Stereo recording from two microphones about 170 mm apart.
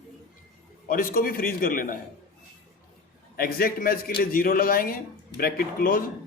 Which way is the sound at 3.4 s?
60° left (ahead or behind).